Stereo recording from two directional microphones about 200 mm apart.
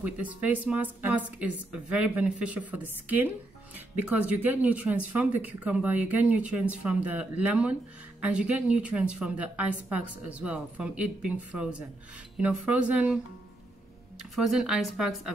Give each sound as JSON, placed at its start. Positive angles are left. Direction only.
{"t": 0.0, "sound": "a woman's voice", "side_deg": -5}
{"t": 14.3, "sound": "a woman's voice", "side_deg": 0}